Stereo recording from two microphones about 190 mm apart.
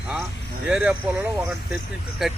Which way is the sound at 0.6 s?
5° right (ahead or behind).